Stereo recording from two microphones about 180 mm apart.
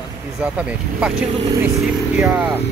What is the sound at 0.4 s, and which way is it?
Speech, 5° right (ahead or behind).